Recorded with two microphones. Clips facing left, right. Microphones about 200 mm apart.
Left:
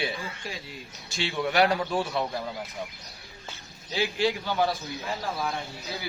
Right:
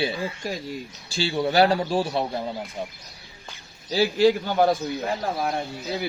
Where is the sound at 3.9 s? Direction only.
40° right (ahead or behind); by 5.6 s 55° right (ahead or behind).